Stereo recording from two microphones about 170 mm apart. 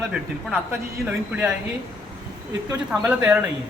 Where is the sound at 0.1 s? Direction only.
10° right (ahead or behind).